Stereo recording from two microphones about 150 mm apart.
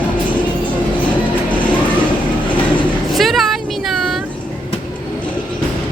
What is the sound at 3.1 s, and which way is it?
Vehicle, centre (ahead or behind).